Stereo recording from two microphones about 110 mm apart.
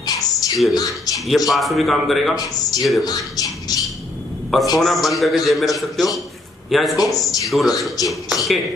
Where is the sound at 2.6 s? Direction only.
35° left (ahead or behind).